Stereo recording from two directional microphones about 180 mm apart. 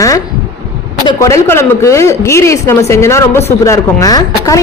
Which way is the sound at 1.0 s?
15° left (ahead or behind).